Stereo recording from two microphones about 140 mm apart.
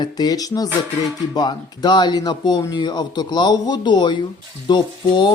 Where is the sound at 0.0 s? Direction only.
30° left (ahead or behind).